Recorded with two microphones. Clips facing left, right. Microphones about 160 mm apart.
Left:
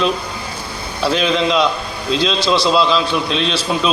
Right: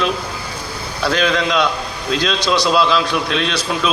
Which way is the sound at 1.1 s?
5° left (ahead or behind).